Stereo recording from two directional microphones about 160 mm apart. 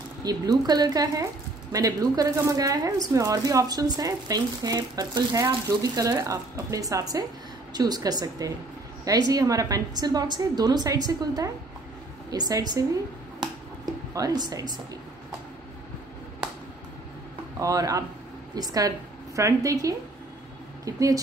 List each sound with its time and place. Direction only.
0.2 s speech: 25° right (ahead or behind)
14.1 s speech: 25° right (ahead or behind)
17.6 s a woman's voice: 20° right (ahead or behind)